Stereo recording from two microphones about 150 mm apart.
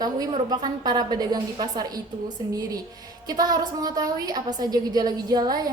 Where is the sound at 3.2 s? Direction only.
25° right (ahead or behind).